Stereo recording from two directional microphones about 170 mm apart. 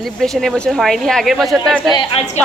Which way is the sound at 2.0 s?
40° left (ahead or behind).